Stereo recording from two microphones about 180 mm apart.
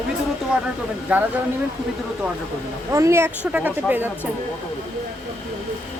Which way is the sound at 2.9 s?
15° right (ahead or behind).